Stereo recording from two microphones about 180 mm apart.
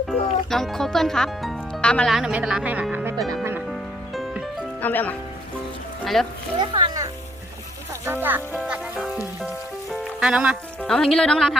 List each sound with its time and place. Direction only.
0.1 s speech: centre (ahead or behind)
3.2 s music: centre (ahead or behind)
4.9 s speech: 10° left (ahead or behind)
6.1 s music: centre (ahead or behind)
6.6 s a child's voice: 25° right (ahead or behind)
8.0 s music: 10° right (ahead or behind)
9.9 s speech: 5° right (ahead or behind)